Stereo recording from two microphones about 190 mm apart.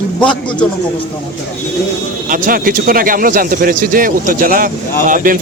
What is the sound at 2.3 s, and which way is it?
Speech, 45° right (ahead or behind).